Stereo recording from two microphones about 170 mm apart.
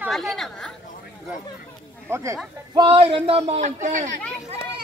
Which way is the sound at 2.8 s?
35° right (ahead or behind).